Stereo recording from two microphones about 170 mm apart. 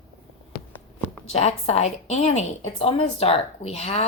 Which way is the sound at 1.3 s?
40° left (ahead or behind).